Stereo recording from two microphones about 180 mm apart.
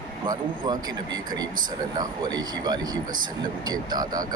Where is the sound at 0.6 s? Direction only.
20° right (ahead or behind).